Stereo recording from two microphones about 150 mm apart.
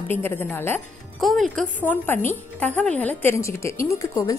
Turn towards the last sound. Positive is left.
turn(degrees=20)  # may be behind; listen again after turning